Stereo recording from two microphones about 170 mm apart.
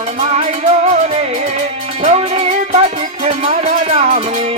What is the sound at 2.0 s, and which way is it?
Music, 40° right (ahead or behind).